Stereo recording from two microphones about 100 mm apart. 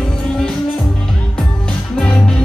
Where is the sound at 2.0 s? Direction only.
5° left (ahead or behind).